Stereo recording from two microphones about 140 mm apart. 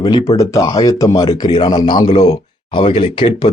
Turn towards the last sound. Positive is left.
turn(degrees=35)  # may be behind; listen again after turning